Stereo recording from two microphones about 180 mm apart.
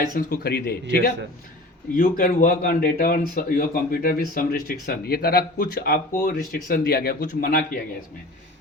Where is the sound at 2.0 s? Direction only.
45° left (ahead or behind).